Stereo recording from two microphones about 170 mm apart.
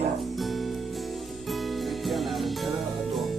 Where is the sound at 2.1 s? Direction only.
Centre (ahead or behind).